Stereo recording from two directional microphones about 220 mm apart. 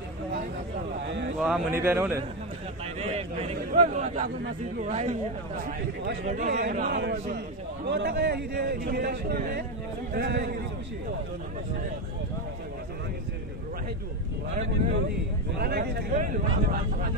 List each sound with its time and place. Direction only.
1.0 s speech: 55° right (ahead or behind)
1.4 s speech: 5° right (ahead or behind)
3.0 s a man's voice: 30° right (ahead or behind); by 10.5 s 45° right (ahead or behind)
15.5 s speech: 45° right (ahead or behind)